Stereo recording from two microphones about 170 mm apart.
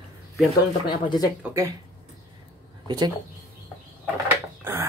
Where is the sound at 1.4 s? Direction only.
15° right (ahead or behind).